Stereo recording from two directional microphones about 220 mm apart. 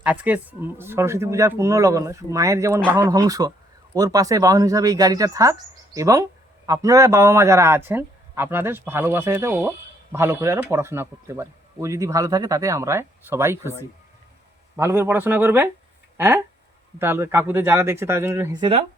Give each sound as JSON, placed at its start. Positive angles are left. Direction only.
{"t": 0.0, "sound": "speech", "side_deg": -5}
{"t": 14.8, "sound": "speech", "side_deg": -10}